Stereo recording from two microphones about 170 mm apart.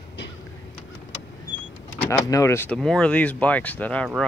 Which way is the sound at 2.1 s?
20° left (ahead or behind).